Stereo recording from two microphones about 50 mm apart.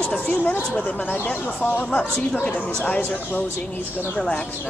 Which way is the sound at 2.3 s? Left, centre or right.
Left.